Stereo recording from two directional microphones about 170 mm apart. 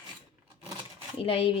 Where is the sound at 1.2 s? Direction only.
35° left (ahead or behind).